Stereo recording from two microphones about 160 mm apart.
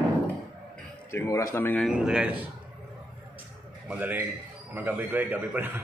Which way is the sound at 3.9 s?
10° right (ahead or behind).